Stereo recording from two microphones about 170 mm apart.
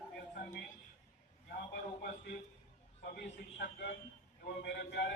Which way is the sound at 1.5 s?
65° left (ahead or behind).